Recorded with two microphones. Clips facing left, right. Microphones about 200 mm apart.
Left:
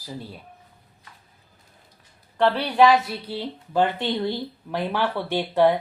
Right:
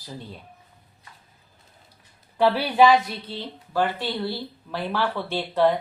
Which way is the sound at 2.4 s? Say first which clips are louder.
Even; 5° right (ahead or behind).